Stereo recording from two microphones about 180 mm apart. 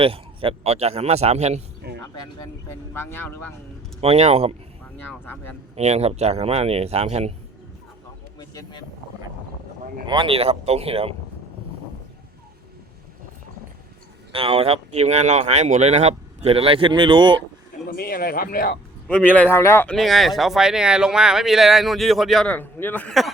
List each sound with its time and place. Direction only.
0.0 s speech: 30° right (ahead or behind)
1.8 s music: 60° right (ahead or behind)
2.9 s speech: 10° left (ahead or behind)
4.0 s speech: 35° right (ahead or behind)
5.0 s speech: 10° left (ahead or behind)
5.7 s speech: 35° right (ahead or behind)
8.4 s vehicle: 20° left (ahead or behind)
10.1 s speech: 30° right (ahead or behind)
14.3 s speech: 35° right (ahead or behind)
17.9 s speech: 55° left (ahead or behind)
19.0 s speech: 10° left (ahead or behind)